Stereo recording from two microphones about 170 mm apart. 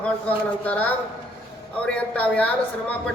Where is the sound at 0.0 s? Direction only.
10° left (ahead or behind).